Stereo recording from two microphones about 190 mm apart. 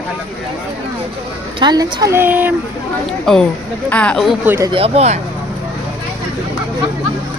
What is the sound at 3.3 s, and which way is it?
Speech, 5° left (ahead or behind).